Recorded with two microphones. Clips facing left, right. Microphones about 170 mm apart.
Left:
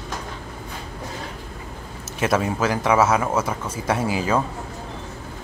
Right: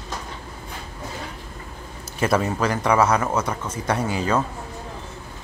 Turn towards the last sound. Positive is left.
turn(degrees=5)  # may be behind; listen again after turning